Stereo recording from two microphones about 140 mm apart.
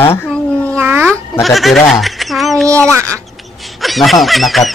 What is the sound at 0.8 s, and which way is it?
Cat, 15° right (ahead or behind).